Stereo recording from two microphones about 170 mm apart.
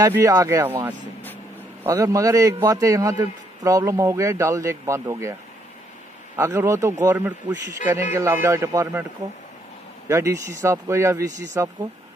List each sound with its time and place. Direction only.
0.0 s a man's voice: 20° right (ahead or behind)
6.3 s a man's voice: 15° right (ahead or behind)
10.0 s a man's voice: 20° right (ahead or behind)